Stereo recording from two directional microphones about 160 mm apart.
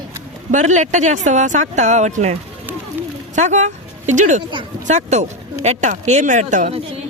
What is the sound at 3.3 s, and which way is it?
Speech, 50° right (ahead or behind).